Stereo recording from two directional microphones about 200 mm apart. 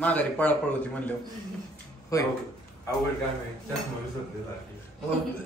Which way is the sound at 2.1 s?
15° left (ahead or behind).